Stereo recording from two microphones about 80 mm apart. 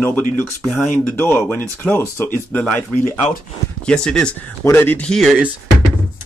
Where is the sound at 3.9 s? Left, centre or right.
Centre.